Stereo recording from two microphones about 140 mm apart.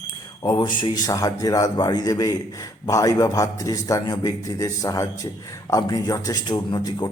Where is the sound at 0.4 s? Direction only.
30° left (ahead or behind).